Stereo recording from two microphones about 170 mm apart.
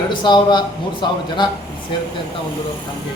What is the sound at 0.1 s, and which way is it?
Speech, 30° left (ahead or behind).